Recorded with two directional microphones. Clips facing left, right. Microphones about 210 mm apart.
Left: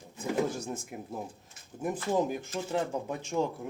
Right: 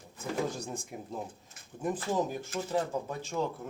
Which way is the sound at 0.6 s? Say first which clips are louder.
Left 2 dB; 5° left (ahead or behind).